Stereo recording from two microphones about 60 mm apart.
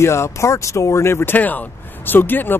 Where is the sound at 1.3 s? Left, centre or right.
Left.